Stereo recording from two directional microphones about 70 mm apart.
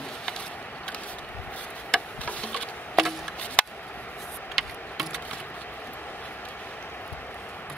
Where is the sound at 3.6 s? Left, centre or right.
Centre.